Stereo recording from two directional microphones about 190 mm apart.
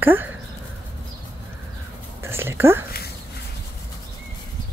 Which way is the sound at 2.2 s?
10° right (ahead or behind).